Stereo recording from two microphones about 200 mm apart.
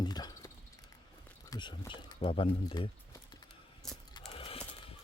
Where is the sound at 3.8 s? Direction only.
Centre (ahead or behind).